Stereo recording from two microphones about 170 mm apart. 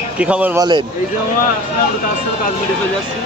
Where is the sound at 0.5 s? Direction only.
25° right (ahead or behind).